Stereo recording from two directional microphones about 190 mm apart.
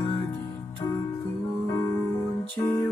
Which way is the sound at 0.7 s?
20° left (ahead or behind).